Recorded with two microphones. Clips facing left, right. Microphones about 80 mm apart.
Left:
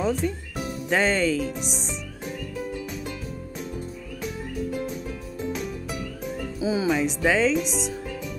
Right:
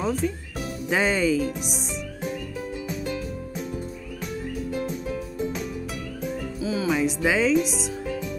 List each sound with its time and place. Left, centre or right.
0.0 s speech: centre
2.9 s music: centre
4.6 s music: centre
6.6 s music: centre
6.9 s speech: centre